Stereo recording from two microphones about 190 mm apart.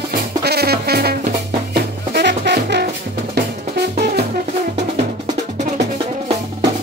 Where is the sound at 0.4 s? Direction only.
55° right (ahead or behind).